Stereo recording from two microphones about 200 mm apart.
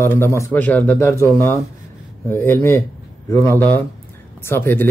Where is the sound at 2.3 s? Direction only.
10° left (ahead or behind).